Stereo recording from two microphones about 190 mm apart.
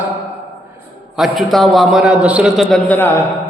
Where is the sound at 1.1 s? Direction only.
Centre (ahead or behind).